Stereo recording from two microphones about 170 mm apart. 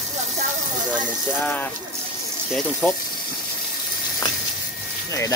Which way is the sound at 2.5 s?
10° left (ahead or behind).